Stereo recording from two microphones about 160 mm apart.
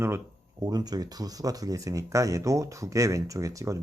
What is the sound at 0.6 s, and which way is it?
Speech, 25° right (ahead or behind).